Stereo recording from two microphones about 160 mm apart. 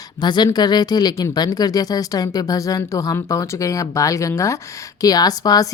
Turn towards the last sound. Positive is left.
turn(degrees=25)  # may be behind; listen again after turning